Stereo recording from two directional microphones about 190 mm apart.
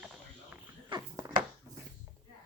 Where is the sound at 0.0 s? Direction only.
5° right (ahead or behind).